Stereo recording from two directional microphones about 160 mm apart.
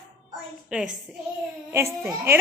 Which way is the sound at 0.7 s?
10° right (ahead or behind).